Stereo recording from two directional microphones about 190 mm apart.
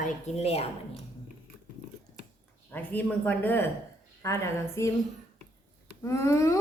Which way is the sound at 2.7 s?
10° left (ahead or behind).